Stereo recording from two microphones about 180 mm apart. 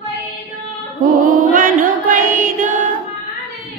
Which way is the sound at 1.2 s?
45° right (ahead or behind).